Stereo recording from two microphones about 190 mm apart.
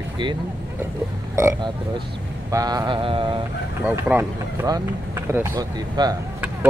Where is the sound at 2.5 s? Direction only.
20° right (ahead or behind).